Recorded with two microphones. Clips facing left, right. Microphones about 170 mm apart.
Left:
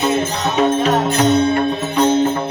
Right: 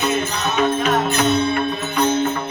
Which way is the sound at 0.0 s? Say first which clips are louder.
Left 3 dB; 30° left (ahead or behind).